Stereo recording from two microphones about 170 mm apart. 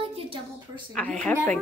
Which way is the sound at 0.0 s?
35° right (ahead or behind).